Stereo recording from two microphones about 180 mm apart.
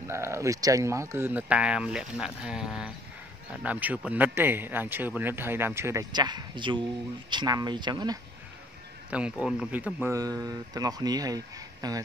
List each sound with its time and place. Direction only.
0.0 s speech: 15° right (ahead or behind)
9.1 s speech: 5° right (ahead or behind)